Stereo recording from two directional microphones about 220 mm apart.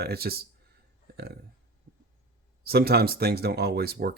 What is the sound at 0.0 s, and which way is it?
Speech, 45° right (ahead or behind).